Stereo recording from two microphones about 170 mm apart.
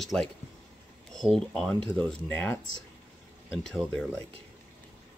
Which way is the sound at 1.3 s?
5° left (ahead or behind).